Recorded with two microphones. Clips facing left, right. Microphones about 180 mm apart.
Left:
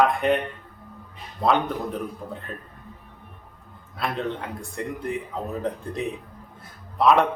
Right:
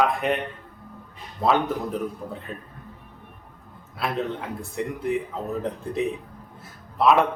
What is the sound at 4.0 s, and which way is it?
A man's voice, centre (ahead or behind).